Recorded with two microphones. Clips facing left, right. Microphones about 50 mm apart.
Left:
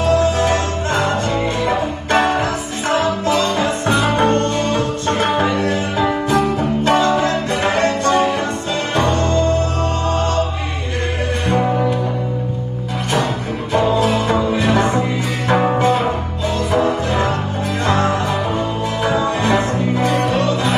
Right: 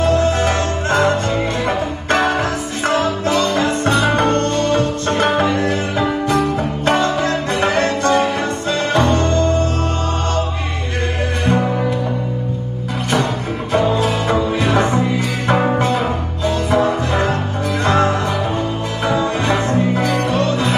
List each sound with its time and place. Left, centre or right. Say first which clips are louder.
0.2 s music: left 1 dB; right
1.3 s music: left 1 dB; right
3.3 s music: even; right
5.0 s music: right 1 dB; right
6.8 s music: left 1 dB; right
9.1 s music: right 1 dB; right
16.4 s music: right 1 dB; right
19.2 s music: left 1 dB; left